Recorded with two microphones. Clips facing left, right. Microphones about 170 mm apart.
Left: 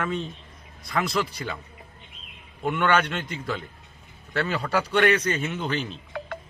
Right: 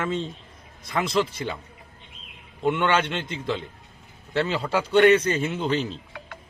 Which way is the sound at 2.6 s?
25° right (ahead or behind).